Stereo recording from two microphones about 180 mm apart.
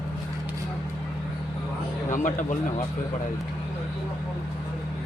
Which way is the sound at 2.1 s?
45° left (ahead or behind).